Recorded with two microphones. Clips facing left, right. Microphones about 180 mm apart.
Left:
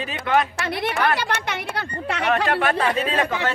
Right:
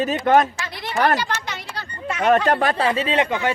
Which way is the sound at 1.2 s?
60° left (ahead or behind).